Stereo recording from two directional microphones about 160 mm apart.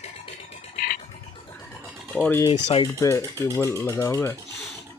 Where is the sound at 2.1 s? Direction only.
5° left (ahead or behind).